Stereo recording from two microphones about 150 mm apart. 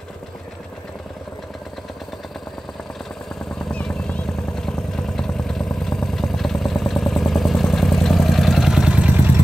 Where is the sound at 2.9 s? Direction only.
5° left (ahead or behind).